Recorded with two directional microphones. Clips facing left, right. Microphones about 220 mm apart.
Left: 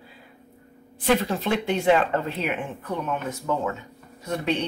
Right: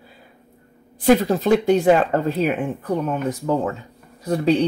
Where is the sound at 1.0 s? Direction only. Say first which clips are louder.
Right 7 dB; 40° right (ahead or behind).